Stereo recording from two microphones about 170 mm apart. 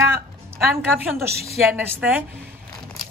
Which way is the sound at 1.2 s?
70° right (ahead or behind).